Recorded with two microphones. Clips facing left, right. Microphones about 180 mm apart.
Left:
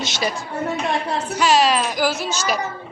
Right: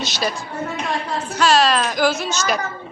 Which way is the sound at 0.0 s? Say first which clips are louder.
Even; 20° left (ahead or behind).